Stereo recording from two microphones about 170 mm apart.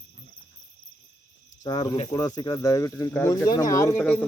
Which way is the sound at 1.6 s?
25° left (ahead or behind).